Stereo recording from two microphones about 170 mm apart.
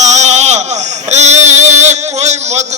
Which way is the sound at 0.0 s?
45° right (ahead or behind).